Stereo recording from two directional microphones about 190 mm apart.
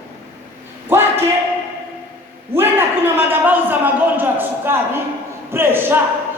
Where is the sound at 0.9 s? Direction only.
10° right (ahead or behind).